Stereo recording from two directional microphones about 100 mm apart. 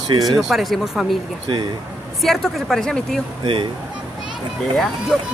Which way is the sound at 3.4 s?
55° right (ahead or behind).